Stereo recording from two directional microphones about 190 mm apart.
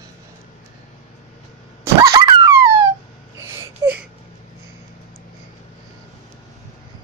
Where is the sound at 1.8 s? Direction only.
20° right (ahead or behind).